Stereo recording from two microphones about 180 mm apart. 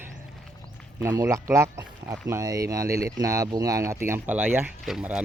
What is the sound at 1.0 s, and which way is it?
Speech, 15° right (ahead or behind).